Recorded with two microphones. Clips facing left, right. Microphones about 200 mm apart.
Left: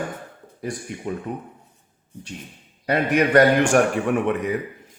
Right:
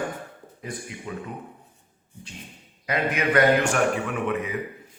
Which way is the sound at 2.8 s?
45° left (ahead or behind).